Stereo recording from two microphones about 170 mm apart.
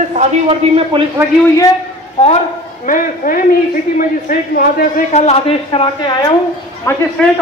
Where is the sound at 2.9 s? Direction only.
55° left (ahead or behind).